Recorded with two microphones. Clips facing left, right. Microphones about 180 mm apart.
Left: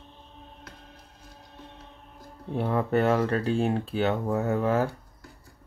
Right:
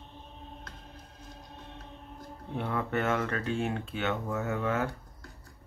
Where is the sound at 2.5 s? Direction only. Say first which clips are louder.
Left 7 dB; 35° left (ahead or behind).